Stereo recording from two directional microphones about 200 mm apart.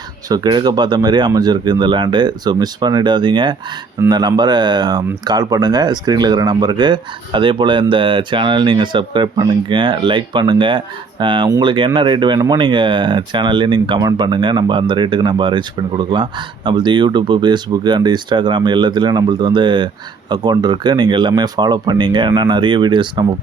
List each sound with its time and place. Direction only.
0.3 s speech: 20° right (ahead or behind)